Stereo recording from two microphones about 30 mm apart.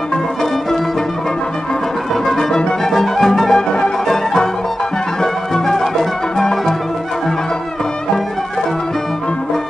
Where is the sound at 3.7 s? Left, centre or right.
Left.